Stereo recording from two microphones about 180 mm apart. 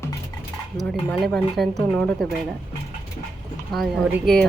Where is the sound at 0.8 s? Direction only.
Centre (ahead or behind).